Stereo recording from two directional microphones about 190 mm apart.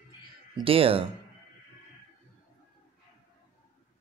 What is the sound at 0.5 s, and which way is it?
Speech, 30° right (ahead or behind).